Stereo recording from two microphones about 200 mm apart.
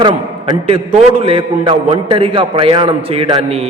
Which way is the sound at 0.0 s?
20° right (ahead or behind).